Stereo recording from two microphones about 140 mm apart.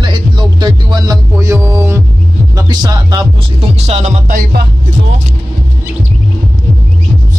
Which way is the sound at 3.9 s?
50° right (ahead or behind).